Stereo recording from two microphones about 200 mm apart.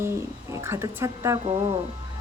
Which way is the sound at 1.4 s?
30° right (ahead or behind).